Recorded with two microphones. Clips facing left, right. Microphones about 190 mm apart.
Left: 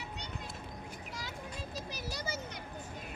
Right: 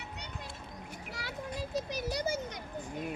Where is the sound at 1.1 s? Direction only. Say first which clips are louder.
Right 6 dB; 70° right (ahead or behind).